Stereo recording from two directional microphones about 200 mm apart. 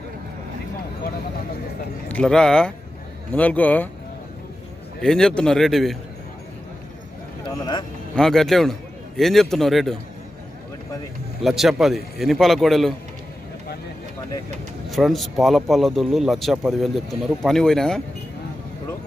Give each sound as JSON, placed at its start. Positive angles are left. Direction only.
{"t": 2.0, "sound": "speech", "side_deg": 5}
{"t": 5.0, "sound": "speech", "side_deg": 5}
{"t": 7.4, "sound": "speech", "side_deg": 20}
{"t": 8.2, "sound": "speech", "side_deg": 0}
{"t": 11.4, "sound": "speech", "side_deg": 0}
{"t": 14.9, "sound": "speech", "side_deg": 0}